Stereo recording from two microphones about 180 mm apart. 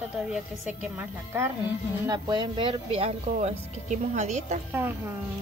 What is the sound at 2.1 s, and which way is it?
Speech, 25° right (ahead or behind).